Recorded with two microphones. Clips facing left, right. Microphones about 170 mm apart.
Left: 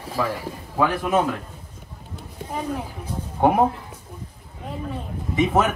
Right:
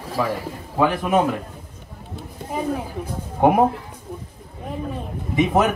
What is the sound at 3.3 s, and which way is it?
Speech, 15° right (ahead or behind).